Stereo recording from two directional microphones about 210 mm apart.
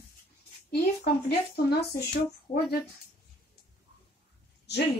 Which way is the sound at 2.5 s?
30° left (ahead or behind).